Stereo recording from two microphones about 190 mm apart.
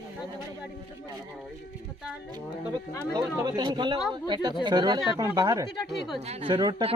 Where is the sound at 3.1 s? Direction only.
20° right (ahead or behind).